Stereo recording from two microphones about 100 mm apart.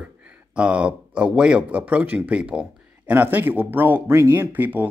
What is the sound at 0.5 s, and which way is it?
Speech, 10° right (ahead or behind).